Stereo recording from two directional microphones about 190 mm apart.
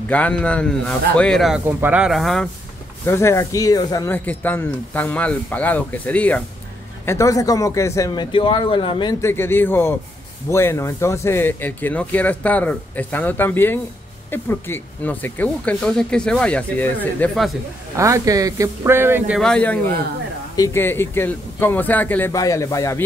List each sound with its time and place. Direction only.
0.1 s a man's voice: 5° left (ahead or behind)
3.1 s speech: 15° left (ahead or behind)
9.2 s speech: 10° left (ahead or behind)
17.9 s speech: 15° right (ahead or behind); by 23.0 s 15° left (ahead or behind)